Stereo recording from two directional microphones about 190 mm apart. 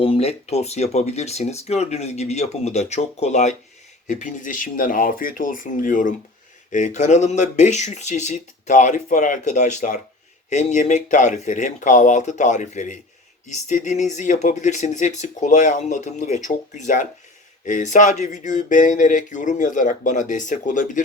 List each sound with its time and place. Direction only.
0.0 s speech: 30° left (ahead or behind)